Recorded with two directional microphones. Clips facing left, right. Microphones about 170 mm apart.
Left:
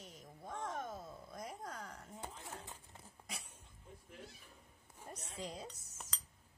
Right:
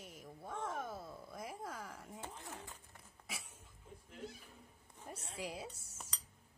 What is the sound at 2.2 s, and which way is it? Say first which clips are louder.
Speech: left 1 dB; 20° left (ahead or behind).